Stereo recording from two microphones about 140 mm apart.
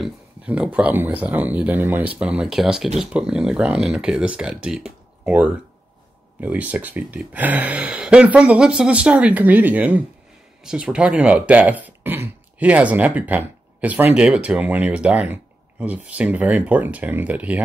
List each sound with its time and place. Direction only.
0.0 s speech: 10° right (ahead or behind)